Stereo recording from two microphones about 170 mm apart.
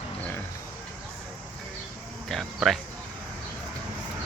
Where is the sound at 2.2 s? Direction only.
Centre (ahead or behind).